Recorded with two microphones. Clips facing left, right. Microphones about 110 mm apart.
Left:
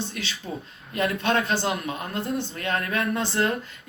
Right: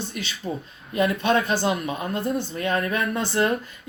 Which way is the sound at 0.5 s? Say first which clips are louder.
Right 5 dB; 15° right (ahead or behind).